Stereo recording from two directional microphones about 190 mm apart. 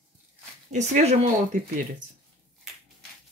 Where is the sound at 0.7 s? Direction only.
35° right (ahead or behind).